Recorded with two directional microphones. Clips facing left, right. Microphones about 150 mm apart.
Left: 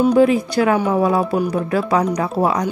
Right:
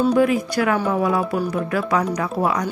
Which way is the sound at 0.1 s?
25° left (ahead or behind).